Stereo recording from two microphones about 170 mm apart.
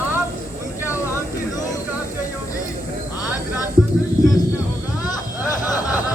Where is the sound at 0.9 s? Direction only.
15° left (ahead or behind).